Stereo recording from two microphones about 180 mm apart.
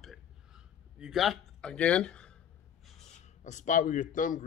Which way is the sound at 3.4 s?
45° left (ahead or behind).